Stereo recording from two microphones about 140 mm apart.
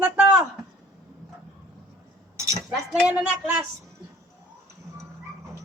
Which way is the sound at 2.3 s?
20° right (ahead or behind).